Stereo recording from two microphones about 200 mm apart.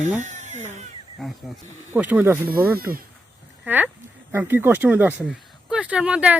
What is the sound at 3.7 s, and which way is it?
Speech, 10° right (ahead or behind).